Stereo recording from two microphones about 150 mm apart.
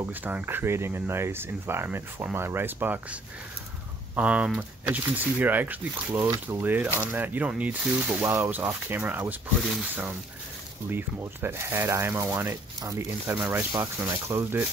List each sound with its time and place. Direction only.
0.0 s speech: 10° right (ahead or behind)
9.6 s speech: centre (ahead or behind); by 14.6 s 20° right (ahead or behind)